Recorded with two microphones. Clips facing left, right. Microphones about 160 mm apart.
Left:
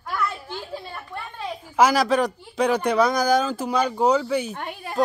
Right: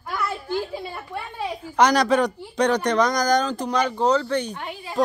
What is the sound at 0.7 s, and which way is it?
Speech, 10° right (ahead or behind).